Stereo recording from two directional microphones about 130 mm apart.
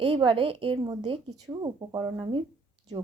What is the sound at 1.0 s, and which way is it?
Speech, 55° right (ahead or behind).